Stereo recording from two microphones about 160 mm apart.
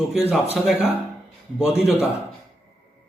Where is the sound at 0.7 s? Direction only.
Centre (ahead or behind).